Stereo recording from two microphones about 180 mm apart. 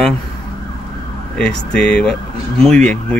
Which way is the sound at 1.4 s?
5° left (ahead or behind).